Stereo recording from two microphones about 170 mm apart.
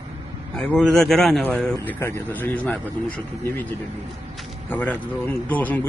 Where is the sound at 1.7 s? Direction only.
15° left (ahead or behind).